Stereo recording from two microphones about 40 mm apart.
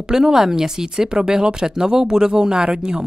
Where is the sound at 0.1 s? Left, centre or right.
Centre.